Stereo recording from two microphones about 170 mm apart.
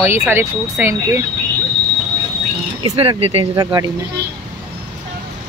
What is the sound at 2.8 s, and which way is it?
Speech, 30° right (ahead or behind).